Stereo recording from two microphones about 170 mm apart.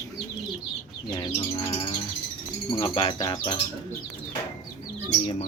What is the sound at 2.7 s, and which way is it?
Speech, 30° left (ahead or behind).